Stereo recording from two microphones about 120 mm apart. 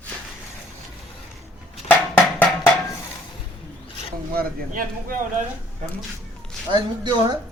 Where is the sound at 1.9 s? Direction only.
15° left (ahead or behind).